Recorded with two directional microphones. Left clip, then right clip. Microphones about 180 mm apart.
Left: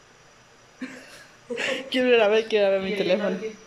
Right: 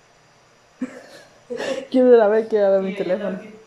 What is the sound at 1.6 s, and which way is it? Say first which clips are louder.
Speech: right 5 dB; 20° right (ahead or behind).